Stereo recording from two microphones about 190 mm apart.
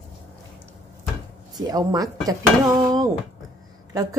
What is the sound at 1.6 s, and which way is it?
Speech, 20° right (ahead or behind).